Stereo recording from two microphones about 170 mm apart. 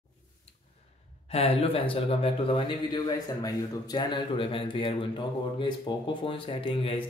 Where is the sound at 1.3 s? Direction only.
35° left (ahead or behind).